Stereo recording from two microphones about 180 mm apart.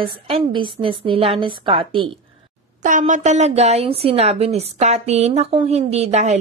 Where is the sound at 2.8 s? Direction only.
45° right (ahead or behind).